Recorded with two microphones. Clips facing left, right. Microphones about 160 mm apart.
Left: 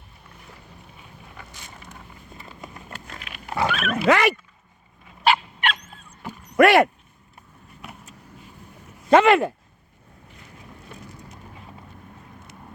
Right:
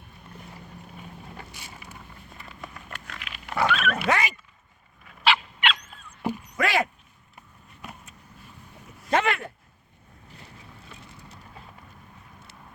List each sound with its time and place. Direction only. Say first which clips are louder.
2.4 s vehicle: left 1 dB; 25° left (ahead or behind)
3.5 s pig: even; 25° left (ahead or behind)
4.1 s speech: left 9 dB; 70° left (ahead or behind)
5.2 s dog: left 4 dB; 45° left (ahead or behind)
6.6 s speech: left 11 dB; 65° left (ahead or behind)
9.0 s speech: left 10 dB; 90° left